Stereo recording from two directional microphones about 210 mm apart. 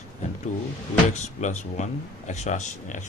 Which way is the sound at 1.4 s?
35° left (ahead or behind).